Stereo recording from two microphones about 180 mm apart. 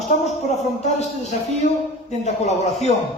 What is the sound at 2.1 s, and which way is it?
Speech, 40° left (ahead or behind).